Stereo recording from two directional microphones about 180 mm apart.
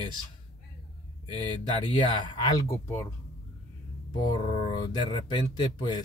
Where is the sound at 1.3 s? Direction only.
25° left (ahead or behind).